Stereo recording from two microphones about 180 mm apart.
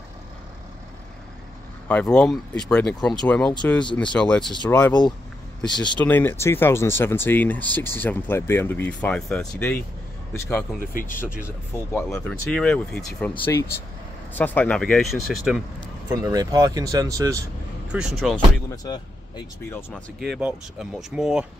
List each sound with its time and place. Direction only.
1.9 s speech: 10° left (ahead or behind)
5.9 s speech: 10° left (ahead or behind)
10.8 s speech: 50° left (ahead or behind)
11.4 s speech: 15° left (ahead or behind)
16.1 s speech: 20° right (ahead or behind)
17.9 s speech: centre (ahead or behind)
18.7 s speech: 25° left (ahead or behind)
20.3 s speech: 5° right (ahead or behind)